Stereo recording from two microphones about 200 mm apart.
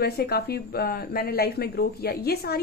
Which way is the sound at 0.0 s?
50° left (ahead or behind).